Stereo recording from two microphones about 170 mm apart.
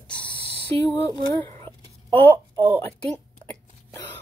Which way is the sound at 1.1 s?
20° left (ahead or behind).